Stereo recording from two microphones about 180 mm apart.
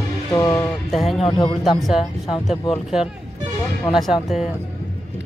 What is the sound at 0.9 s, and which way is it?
Speech, centre (ahead or behind).